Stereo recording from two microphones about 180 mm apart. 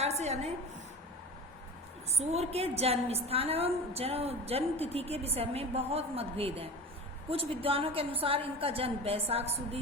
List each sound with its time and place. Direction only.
0.0 s a woman's voice: 35° right (ahead or behind)
2.1 s a woman's voice: 35° right (ahead or behind)